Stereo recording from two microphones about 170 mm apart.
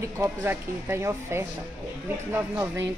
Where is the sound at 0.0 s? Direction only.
15° right (ahead or behind).